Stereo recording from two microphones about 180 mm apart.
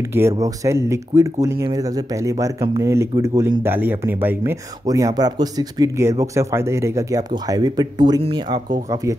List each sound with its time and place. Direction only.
0.1 s speech: 15° right (ahead or behind)